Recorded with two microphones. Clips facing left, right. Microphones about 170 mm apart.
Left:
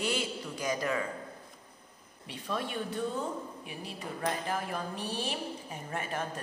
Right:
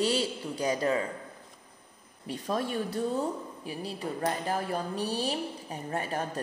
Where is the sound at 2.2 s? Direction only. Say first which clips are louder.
Right 5 dB; 40° right (ahead or behind).